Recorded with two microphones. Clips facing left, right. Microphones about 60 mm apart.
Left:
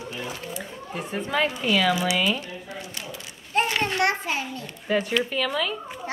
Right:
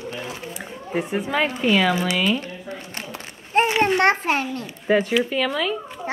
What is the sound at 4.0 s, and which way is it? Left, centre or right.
Speech, right.